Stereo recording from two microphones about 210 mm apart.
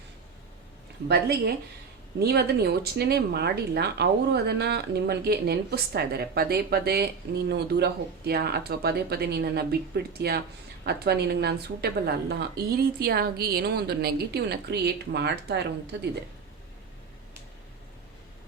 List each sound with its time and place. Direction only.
1.0 s speech: 50° right (ahead or behind)